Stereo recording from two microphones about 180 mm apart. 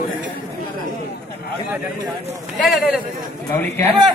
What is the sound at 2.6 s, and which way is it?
Speech, centre (ahead or behind).